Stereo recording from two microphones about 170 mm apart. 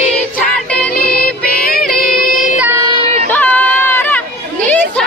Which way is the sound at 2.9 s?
40° right (ahead or behind).